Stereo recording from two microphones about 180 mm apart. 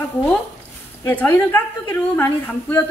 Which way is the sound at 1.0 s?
10° left (ahead or behind).